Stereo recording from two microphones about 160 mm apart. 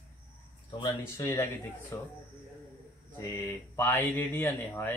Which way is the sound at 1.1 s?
20° left (ahead or behind).